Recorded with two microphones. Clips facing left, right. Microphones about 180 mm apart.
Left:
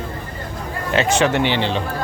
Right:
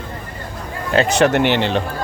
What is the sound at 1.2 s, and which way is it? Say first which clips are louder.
Speech: right 3 dB; 60° right (ahead or behind).